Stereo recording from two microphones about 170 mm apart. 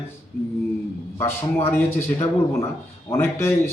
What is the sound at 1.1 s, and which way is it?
A man's voice, 15° left (ahead or behind).